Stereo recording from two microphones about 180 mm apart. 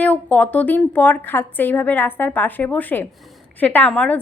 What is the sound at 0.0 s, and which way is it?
A woman's voice, 10° left (ahead or behind).